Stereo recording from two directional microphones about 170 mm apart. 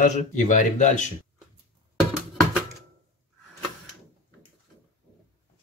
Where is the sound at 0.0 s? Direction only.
45° left (ahead or behind).